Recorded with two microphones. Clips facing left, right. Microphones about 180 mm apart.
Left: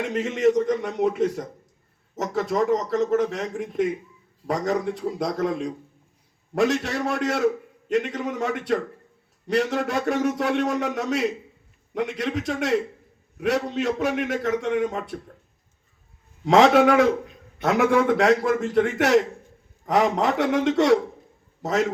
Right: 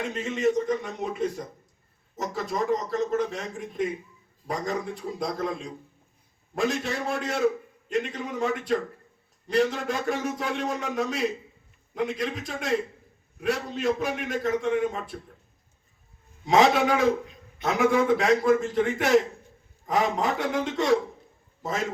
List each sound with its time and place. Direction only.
0.1 s a man's voice: 90° left
16.5 s a man's voice: 80° left